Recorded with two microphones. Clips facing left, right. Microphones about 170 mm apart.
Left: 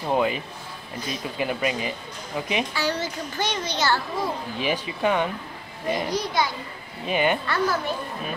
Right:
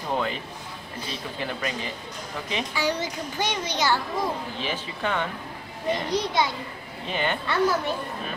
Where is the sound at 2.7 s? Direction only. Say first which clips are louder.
Even; 15° right (ahead or behind).